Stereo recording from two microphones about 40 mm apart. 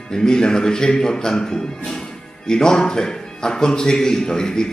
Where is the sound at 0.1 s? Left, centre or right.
Centre.